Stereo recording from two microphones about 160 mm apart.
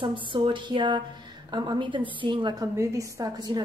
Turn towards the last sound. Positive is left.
turn(degrees=-25)  # may be behind; listen again after turning